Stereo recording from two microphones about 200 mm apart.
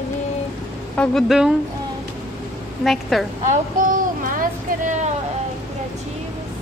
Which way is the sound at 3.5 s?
40° right (ahead or behind).